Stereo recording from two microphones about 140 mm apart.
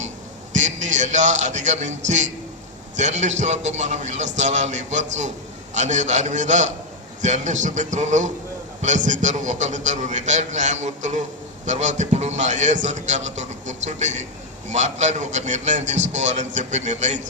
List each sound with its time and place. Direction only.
0.5 s a man's voice: 60° right (ahead or behind)